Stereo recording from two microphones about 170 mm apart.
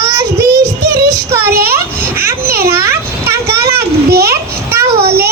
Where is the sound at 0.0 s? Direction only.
15° right (ahead or behind).